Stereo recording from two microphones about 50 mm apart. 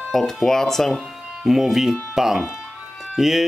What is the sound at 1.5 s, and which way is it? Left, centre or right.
Speech, centre.